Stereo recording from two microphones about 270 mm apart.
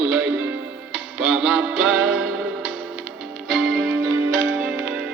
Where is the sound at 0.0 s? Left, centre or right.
Centre.